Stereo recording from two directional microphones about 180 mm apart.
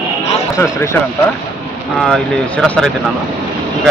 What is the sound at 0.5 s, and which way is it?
Speech, 15° left (ahead or behind).